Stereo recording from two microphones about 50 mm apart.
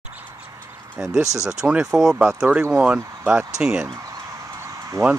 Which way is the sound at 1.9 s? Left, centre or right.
Centre.